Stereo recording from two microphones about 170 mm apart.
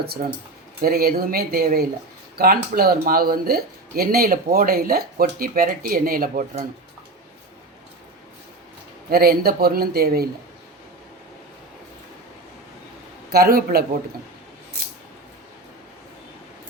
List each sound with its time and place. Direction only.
0.2 s speech: 55° right (ahead or behind)
9.0 s speech: 65° right (ahead or behind)
13.3 s speech: 60° right (ahead or behind)